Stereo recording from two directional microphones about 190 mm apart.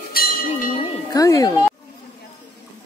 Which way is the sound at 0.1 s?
50° left (ahead or behind).